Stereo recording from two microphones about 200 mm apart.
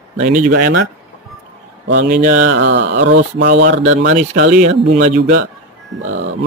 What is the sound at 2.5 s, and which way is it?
Speech, 65° right (ahead or behind).